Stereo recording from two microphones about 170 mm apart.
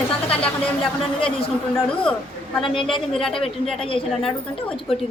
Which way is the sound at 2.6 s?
30° left (ahead or behind).